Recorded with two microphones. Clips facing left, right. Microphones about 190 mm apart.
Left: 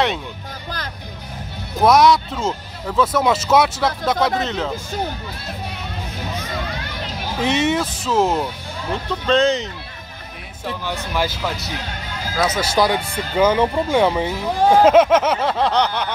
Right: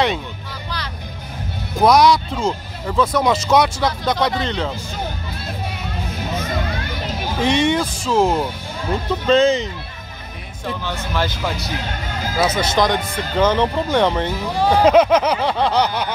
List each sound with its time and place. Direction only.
1.8 s speech: centre (ahead or behind)
7.4 s speech: 5° left (ahead or behind)
11.1 s speech: 5° left (ahead or behind)